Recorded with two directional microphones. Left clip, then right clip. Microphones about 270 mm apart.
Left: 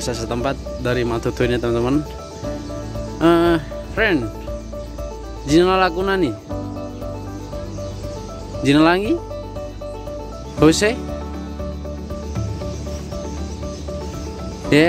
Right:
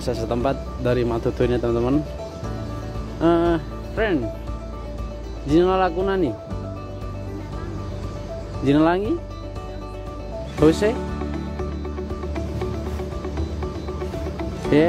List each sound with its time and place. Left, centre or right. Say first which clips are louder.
0.0 s speech: even; centre
3.2 s speech: left 4 dB; centre
5.5 s speech: left 3 dB; centre
8.6 s speech: left 4 dB; centre
10.6 s speech: left 3 dB; centre
14.7 s speech: left 3 dB; centre